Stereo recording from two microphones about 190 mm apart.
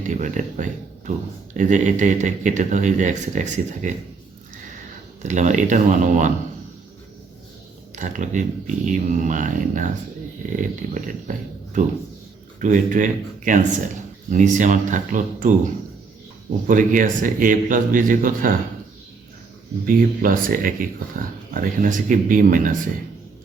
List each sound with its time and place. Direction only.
0.1 s a man's voice: 40° right (ahead or behind)
5.2 s a man's voice: 40° right (ahead or behind)
7.9 s a man's voice: 40° right (ahead or behind)
16.6 s speech: 45° right (ahead or behind)
19.8 s speech: 45° right (ahead or behind)